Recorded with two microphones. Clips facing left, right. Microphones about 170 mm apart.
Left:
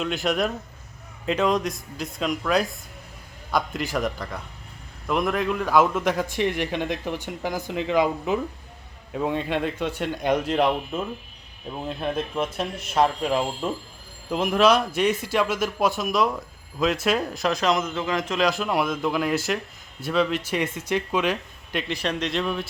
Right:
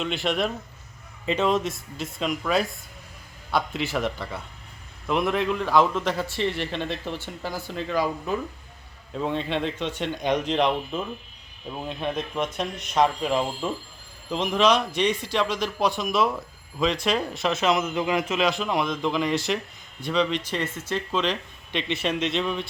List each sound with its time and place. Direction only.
0.0 s a man's voice: centre (ahead or behind)